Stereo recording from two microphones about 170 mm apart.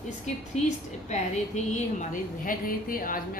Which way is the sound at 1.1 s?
45° left (ahead or behind).